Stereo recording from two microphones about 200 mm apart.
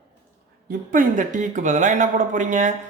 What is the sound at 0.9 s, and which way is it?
Speech, 40° right (ahead or behind).